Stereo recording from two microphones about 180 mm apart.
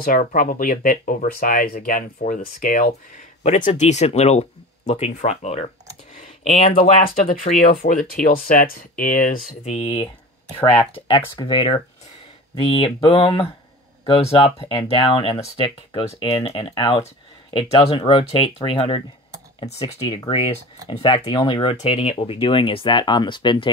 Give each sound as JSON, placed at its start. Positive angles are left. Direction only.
{"t": 0.0, "sound": "speech", "side_deg": 50}
{"t": 6.1, "sound": "computer keyboard", "side_deg": 45}
{"t": 6.8, "sound": "speech", "side_deg": 50}
{"t": 9.5, "sound": "speech", "side_deg": 40}
{"t": 10.6, "sound": "speech", "side_deg": 10}
{"t": 11.1, "sound": "speech", "side_deg": 25}